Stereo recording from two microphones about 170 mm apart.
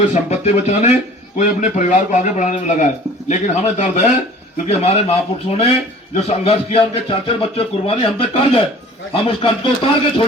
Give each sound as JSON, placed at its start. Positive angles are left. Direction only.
{"t": 0.1, "sound": "a man's voice", "side_deg": 40}